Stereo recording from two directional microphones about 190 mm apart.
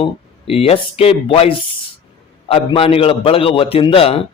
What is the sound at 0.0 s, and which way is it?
A man's voice, 30° left (ahead or behind).